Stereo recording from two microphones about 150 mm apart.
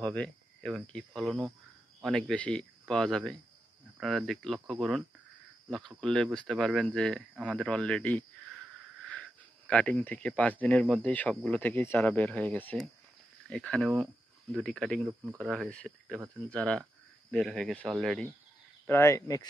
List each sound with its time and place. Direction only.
0.0 s speech: 10° left (ahead or behind)
18.9 s speech: 20° left (ahead or behind)